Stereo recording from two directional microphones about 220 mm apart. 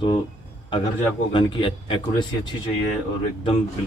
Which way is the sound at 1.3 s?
20° left (ahead or behind).